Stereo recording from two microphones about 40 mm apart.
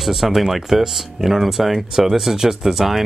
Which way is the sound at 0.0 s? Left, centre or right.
Centre.